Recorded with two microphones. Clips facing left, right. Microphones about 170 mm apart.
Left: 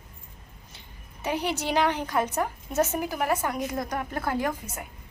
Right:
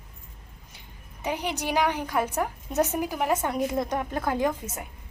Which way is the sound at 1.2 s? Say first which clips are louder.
Left 1 dB; 15° right (ahead or behind).